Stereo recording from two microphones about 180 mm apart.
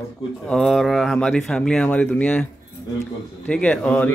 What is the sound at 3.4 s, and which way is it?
Speech, 5° left (ahead or behind).